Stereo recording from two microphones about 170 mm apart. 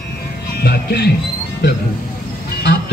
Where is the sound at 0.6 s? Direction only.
65° left (ahead or behind).